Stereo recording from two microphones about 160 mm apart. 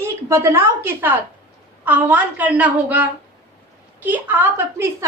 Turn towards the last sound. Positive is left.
turn(degrees=-15)  # may be behind; listen again after turning